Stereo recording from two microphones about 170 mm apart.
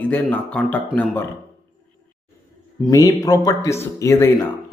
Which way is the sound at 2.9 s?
20° left (ahead or behind).